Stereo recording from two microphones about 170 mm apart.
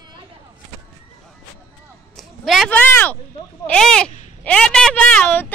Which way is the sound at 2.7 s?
10° left (ahead or behind).